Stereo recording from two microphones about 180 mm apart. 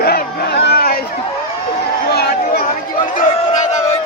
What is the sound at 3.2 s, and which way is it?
Crowd, 40° left (ahead or behind).